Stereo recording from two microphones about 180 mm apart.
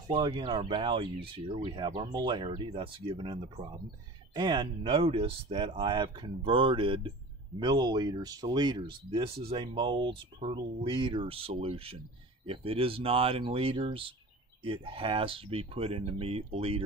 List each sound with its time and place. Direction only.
0.1 s speech: 20° right (ahead or behind)